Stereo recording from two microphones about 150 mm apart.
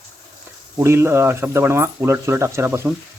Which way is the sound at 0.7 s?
15° right (ahead or behind).